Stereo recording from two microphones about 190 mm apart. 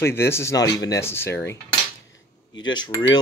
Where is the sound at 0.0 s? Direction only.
15° left (ahead or behind).